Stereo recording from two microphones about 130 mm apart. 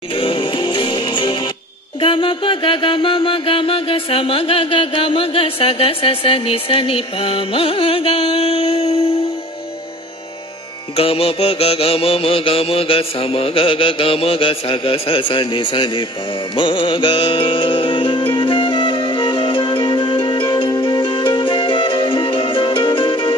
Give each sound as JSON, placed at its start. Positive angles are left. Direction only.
{"t": 0.1, "sound": "music", "side_deg": 40}
{"t": 11.0, "sound": "music", "side_deg": 45}